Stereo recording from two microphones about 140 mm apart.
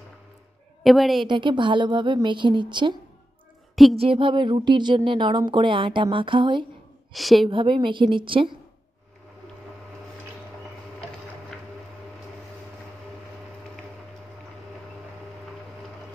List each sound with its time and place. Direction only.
0.8 s a woman's voice: centre (ahead or behind)
1.2 s a woman's voice: 35° right (ahead or behind)
7.1 s a woman's voice: centre (ahead or behind)
7.4 s a woman's voice: 35° right (ahead or behind)